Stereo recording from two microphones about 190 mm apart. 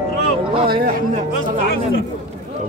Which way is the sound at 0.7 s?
50° right (ahead or behind).